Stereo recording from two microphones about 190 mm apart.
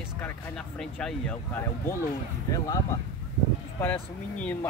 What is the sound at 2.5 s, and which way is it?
Speech, 20° left (ahead or behind).